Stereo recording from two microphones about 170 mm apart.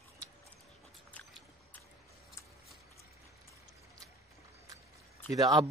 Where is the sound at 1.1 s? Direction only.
10° left (ahead or behind).